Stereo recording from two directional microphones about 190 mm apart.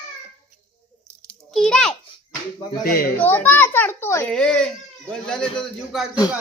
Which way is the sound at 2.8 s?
50° left (ahead or behind).